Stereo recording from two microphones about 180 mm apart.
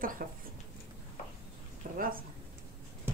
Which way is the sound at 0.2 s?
55° right (ahead or behind).